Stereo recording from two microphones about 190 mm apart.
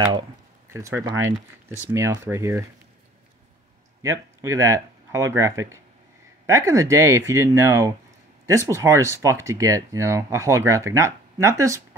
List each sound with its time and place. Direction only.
0.7 s speech: 15° right (ahead or behind)
4.0 s speech: 15° right (ahead or behind)